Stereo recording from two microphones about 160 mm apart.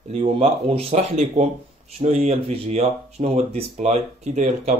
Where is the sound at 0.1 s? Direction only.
40° right (ahead or behind).